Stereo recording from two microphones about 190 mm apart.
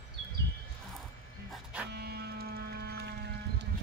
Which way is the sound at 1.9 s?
55° right (ahead or behind).